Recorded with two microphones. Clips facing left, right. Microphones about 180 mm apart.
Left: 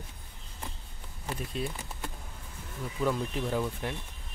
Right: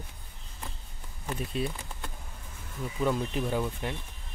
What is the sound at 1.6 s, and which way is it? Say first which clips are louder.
Speech: right 3 dB; centre (ahead or behind).